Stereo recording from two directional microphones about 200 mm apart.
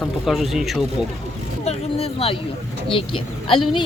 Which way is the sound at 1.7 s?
30° left (ahead or behind).